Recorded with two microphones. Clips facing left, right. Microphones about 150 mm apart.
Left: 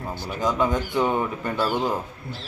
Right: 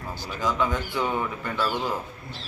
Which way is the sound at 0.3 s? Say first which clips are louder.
Left 3 dB; 20° left (ahead or behind).